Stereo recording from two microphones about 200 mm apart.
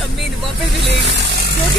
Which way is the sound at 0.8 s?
55° right (ahead or behind).